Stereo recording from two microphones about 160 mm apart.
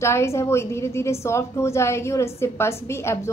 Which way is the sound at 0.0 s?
15° left (ahead or behind).